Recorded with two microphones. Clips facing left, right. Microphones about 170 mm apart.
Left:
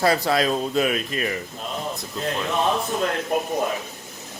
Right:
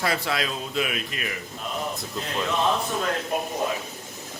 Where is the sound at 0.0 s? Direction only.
40° left (ahead or behind).